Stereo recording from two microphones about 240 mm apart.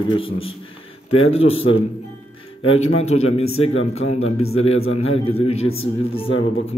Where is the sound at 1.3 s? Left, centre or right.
Left.